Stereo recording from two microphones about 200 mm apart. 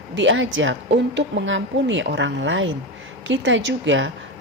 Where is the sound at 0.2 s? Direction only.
70° right (ahead or behind).